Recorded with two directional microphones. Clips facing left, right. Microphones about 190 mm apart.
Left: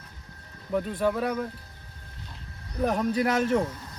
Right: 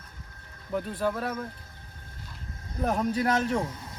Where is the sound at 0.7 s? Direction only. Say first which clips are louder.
Left 3 dB; centre (ahead or behind).